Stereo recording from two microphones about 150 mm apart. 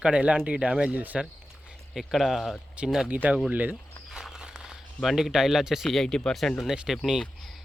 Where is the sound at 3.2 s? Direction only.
10° right (ahead or behind).